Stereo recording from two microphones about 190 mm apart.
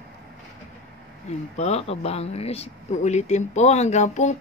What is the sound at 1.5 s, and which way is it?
Speech, 35° left (ahead or behind).